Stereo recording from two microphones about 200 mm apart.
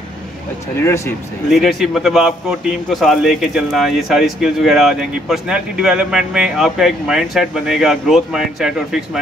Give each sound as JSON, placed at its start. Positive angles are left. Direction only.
{"t": 0.8, "sound": "speech", "side_deg": 15}
{"t": 1.5, "sound": "a man's voice", "side_deg": 0}